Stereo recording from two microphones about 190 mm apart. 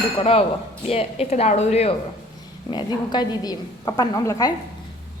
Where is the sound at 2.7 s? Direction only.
25° left (ahead or behind).